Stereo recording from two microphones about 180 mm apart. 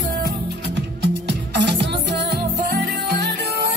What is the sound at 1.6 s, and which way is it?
Music, 70° right (ahead or behind).